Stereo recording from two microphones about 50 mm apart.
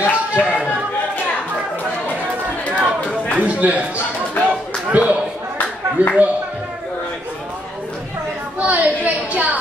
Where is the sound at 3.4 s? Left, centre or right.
Right.